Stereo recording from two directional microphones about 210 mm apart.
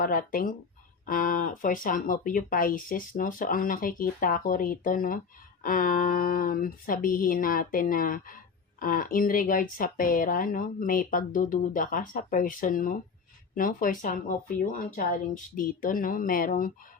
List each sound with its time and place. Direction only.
0.0 s speech: 40° left (ahead or behind)